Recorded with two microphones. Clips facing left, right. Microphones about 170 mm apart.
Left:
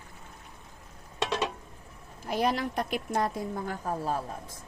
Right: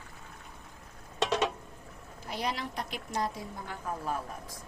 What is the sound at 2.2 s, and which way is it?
A woman's voice, 50° left (ahead or behind).